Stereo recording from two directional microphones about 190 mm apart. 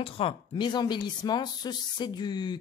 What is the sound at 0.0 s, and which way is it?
Speech, 30° left (ahead or behind).